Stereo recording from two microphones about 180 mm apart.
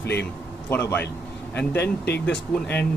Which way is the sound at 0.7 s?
10° left (ahead or behind).